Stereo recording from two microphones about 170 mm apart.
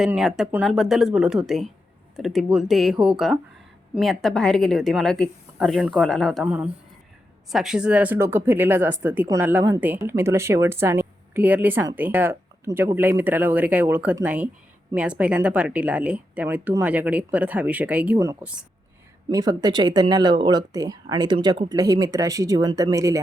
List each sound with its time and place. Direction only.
0.0 s speech: centre (ahead or behind); by 23.2 s 20° right (ahead or behind)